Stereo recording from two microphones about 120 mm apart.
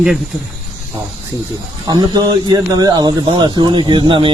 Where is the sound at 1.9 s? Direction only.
35° right (ahead or behind).